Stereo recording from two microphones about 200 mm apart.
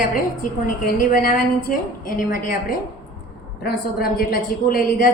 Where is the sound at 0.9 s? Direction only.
45° left (ahead or behind).